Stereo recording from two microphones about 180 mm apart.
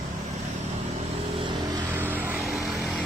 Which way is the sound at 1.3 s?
25° right (ahead or behind).